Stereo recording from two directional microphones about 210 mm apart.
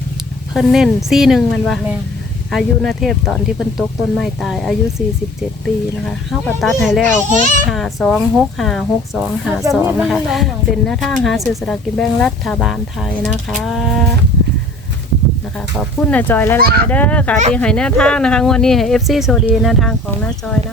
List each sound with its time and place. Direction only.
0.5 s speech: centre (ahead or behind)
7.3 s a child's voice: 40° right (ahead or behind)
7.7 s speech: centre (ahead or behind)
15.8 s speech: 5° left (ahead or behind)